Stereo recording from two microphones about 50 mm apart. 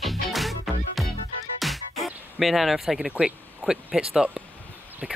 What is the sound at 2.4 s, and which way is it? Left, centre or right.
Speech, centre.